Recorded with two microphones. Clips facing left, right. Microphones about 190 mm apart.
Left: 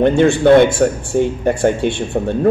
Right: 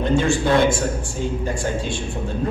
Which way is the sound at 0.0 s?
65° left (ahead or behind).